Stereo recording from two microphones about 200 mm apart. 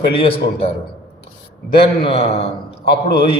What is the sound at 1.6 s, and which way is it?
Speech, 50° left (ahead or behind).